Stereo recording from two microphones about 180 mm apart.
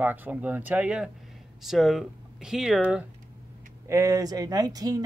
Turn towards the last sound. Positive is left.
turn(degrees=-20)  # may be behind; listen again after turning